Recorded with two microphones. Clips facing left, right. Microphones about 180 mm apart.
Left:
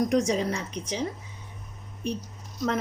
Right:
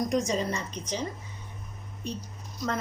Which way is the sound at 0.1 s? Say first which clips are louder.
Left 3 dB; 70° left (ahead or behind).